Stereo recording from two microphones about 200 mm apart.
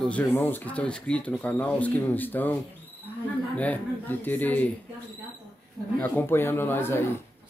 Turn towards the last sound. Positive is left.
turn(degrees=10)  # may be behind; listen again after turning